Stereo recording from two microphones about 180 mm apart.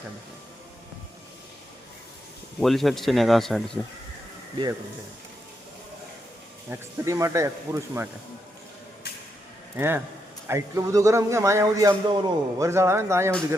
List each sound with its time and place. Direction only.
2.6 s speech: centre (ahead or behind)
6.7 s a man's voice: 15° right (ahead or behind)
9.7 s a man's voice: 10° right (ahead or behind)